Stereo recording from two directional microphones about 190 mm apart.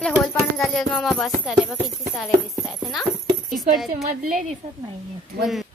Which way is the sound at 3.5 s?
Centre (ahead or behind).